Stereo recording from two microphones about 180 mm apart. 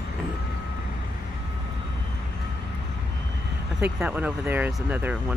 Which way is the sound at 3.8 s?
10° right (ahead or behind).